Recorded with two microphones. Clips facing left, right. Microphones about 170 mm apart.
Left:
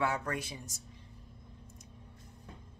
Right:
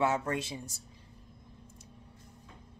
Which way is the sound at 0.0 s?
25° right (ahead or behind).